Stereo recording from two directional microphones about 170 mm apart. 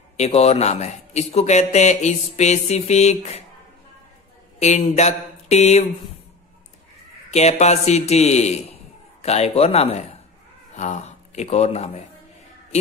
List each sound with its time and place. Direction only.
0.2 s a man's voice: 40° left (ahead or behind)
4.6 s a man's voice: 40° left (ahead or behind)
7.2 s a man's voice: 40° left (ahead or behind)